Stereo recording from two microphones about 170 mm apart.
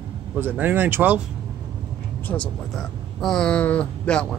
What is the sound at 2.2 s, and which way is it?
Speech, 5° left (ahead or behind).